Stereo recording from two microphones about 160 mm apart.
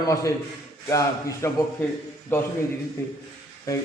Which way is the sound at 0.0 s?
20° left (ahead or behind).